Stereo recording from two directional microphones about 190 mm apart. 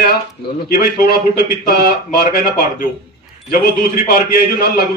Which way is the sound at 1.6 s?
55° left (ahead or behind).